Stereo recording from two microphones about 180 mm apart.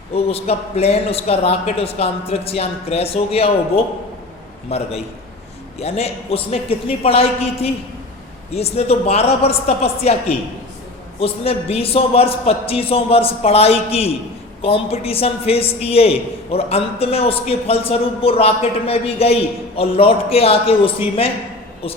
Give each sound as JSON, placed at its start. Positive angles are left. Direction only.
{"t": 0.1, "sound": "a man's voice", "side_deg": 35}